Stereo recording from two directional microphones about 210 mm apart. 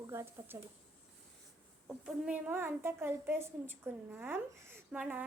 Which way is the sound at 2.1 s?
5° right (ahead or behind).